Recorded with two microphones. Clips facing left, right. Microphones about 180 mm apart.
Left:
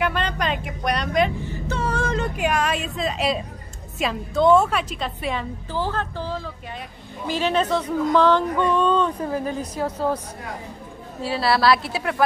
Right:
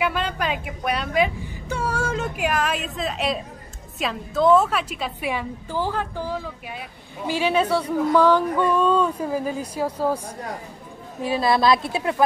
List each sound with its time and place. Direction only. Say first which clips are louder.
0.0 s a woman's voice: even; 5° right (ahead or behind); by 12.2 s 25° right (ahead or behind)